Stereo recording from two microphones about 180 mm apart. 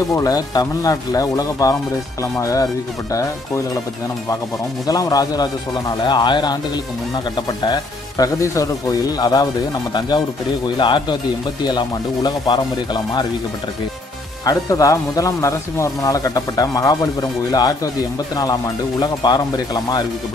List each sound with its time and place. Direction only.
0.1 s speech: 20° left (ahead or behind)
4.8 s speech: 20° left (ahead or behind)
14.4 s speech: 20° left (ahead or behind)